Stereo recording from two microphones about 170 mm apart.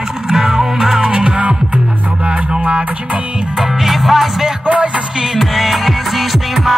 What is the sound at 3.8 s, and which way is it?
Music, centre (ahead or behind).